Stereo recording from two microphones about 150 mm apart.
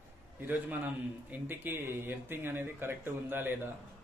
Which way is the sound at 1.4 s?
15° right (ahead or behind).